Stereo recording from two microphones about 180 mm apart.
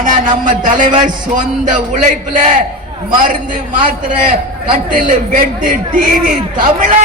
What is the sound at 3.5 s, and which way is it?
A man's voice, 45° right (ahead or behind).